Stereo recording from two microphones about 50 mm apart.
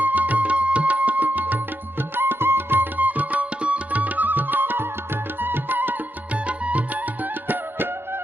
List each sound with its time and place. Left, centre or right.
0.0 s music: right
2.1 s music: right
6.5 s music: right
7.4 s music: right